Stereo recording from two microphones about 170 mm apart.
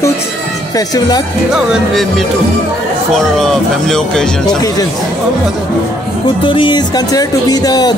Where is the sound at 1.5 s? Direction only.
Centre (ahead or behind).